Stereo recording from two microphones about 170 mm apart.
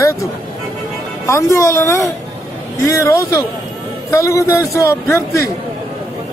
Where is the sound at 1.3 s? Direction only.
20° left (ahead or behind).